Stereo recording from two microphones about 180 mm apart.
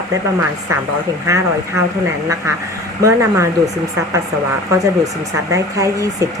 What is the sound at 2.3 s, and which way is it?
Speech, 15° right (ahead or behind).